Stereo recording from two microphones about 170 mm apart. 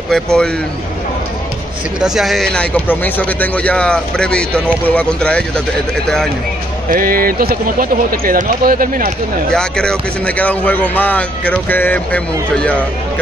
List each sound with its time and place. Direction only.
0.1 s speech: 5° left (ahead or behind)
2.0 s speech: centre (ahead or behind)
6.9 s speech: 55° right (ahead or behind)
9.5 s speech: 5° left (ahead or behind)